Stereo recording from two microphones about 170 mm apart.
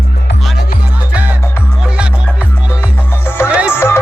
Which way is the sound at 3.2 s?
15° left (ahead or behind).